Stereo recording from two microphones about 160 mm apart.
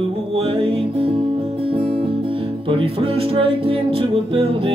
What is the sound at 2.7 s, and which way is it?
Music, 35° right (ahead or behind).